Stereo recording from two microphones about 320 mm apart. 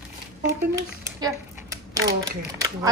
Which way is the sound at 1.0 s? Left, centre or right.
Centre.